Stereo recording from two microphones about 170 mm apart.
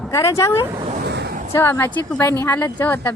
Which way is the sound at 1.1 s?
85° right.